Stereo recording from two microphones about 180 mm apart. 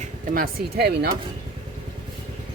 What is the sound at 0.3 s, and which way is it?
Speech, 60° right (ahead or behind).